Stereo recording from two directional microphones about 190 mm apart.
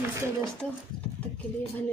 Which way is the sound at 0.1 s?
15° right (ahead or behind).